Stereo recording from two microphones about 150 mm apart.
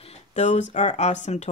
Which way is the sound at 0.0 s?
45° left (ahead or behind).